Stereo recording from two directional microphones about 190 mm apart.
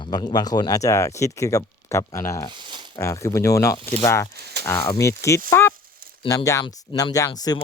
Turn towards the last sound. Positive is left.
turn(degrees=20)  # may be behind; listen again after turning